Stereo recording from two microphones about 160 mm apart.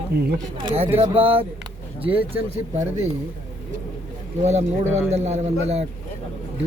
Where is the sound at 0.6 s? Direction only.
35° right (ahead or behind).